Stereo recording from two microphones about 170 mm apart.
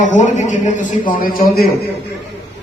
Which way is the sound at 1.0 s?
55° left (ahead or behind).